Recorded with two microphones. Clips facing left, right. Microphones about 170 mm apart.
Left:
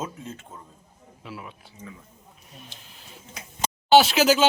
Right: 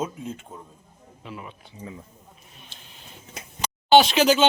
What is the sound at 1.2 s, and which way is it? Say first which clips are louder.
Speech: right 1 dB; 5° left (ahead or behind).